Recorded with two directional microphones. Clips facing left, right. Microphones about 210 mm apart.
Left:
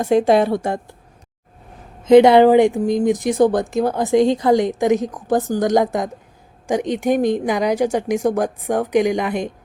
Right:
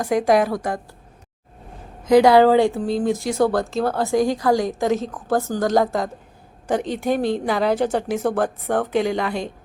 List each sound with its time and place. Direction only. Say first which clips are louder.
0.0 s a woman's voice: left 3 dB; 25° left (ahead or behind)
2.0 s speech: left 3 dB; 25° left (ahead or behind)